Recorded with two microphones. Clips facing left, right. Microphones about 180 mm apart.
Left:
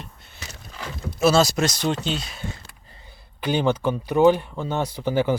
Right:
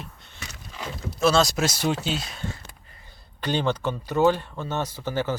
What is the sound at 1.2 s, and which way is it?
Speech, 5° left (ahead or behind).